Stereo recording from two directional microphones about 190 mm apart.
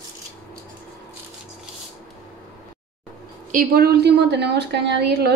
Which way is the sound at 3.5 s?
55° right (ahead or behind).